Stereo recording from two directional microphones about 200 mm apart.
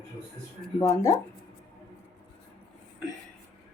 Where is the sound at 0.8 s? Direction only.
15° left (ahead or behind).